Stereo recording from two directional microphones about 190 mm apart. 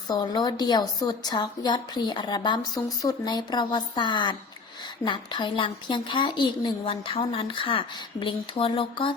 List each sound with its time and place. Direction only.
0.1 s a woman's voice: 20° left (ahead or behind)